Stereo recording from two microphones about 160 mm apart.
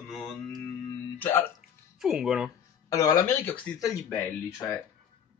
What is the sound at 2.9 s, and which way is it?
Speech, 25° left (ahead or behind).